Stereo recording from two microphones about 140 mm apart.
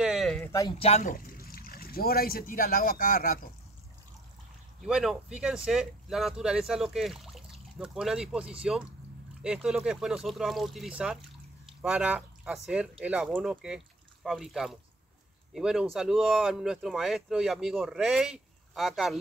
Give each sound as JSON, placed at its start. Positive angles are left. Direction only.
{"t": 0.0, "sound": "a sound", "side_deg": 0}
{"t": 0.5, "sound": "speech", "side_deg": 25}
{"t": 0.7, "sound": "speech", "side_deg": 50}
{"t": 1.1, "sound": "speech", "side_deg": 90}
{"t": 4.8, "sound": "speech", "side_deg": -5}